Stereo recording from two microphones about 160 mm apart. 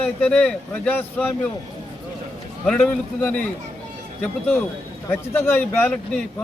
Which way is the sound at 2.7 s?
10° left (ahead or behind).